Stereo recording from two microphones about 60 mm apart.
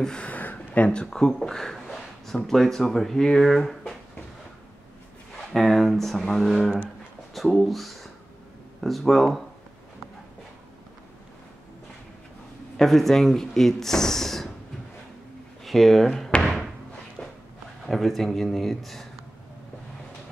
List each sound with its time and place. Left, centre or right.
0.0 s a sound: centre
0.8 s speech: centre
5.5 s speech: centre
12.7 s speech: centre
15.6 s speech: centre
17.2 s walk: centre
17.8 s speech: centre